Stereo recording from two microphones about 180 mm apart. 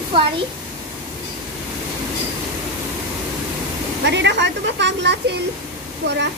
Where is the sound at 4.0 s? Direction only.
75° right (ahead or behind).